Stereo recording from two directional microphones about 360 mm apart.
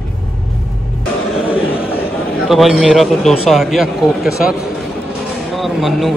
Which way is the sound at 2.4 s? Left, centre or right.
Centre.